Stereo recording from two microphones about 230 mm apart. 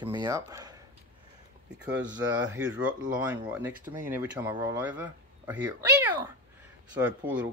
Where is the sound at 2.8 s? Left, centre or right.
Centre.